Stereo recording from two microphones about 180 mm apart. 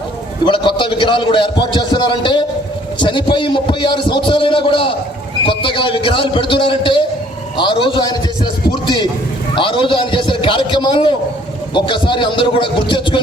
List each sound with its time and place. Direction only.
0.4 s a man's voice: 25° left (ahead or behind)
9.6 s a man's voice: 30° left (ahead or behind)